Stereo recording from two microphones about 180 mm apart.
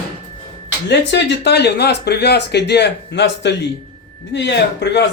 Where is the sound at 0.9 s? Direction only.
70° left (ahead or behind).